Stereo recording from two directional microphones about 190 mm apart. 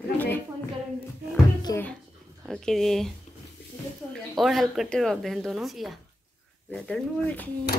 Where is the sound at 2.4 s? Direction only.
Centre (ahead or behind).